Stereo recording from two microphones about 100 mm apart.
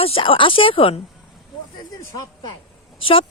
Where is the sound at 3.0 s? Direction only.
65° left (ahead or behind).